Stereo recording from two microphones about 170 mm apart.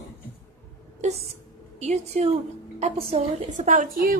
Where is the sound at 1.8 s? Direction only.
40° right (ahead or behind); by 4.2 s 60° right (ahead or behind).